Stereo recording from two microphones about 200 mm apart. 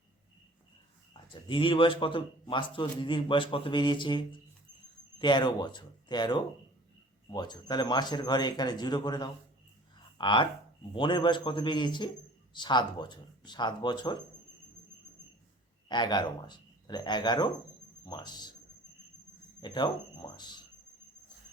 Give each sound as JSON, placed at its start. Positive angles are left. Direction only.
{"t": 1.3, "sound": "a man's voice", "side_deg": 25}
{"t": 15.9, "sound": "a man's voice", "side_deg": 20}
{"t": 19.6, "sound": "a man's voice", "side_deg": 20}